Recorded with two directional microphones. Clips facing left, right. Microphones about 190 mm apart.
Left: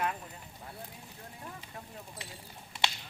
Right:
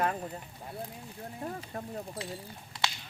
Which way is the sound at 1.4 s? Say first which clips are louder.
Right 9 dB; 45° right (ahead or behind).